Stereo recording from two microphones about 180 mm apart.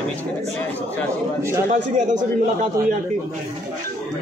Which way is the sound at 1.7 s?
45° right (ahead or behind).